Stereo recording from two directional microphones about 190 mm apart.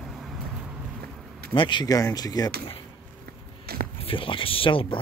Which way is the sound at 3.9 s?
30° left (ahead or behind).